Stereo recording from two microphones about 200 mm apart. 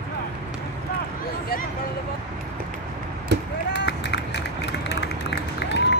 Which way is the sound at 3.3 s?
55° right (ahead or behind).